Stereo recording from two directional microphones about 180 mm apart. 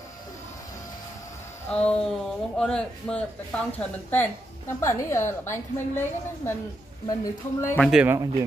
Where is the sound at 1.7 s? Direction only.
5° left (ahead or behind).